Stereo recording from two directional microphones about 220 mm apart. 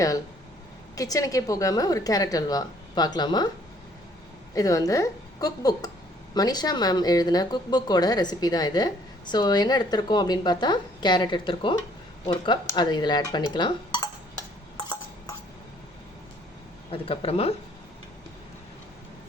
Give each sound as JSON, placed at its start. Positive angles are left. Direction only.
{"t": 0.9, "sound": "a woman's voice", "side_deg": 15}
{"t": 4.5, "sound": "a woman's voice", "side_deg": 15}
{"t": 14.8, "sound": "a sound", "side_deg": 20}
{"t": 16.9, "sound": "a woman's voice", "side_deg": 25}